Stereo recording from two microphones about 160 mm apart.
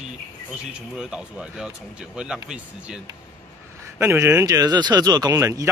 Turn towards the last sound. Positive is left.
turn(degrees=-20)  # may be behind; listen again after turning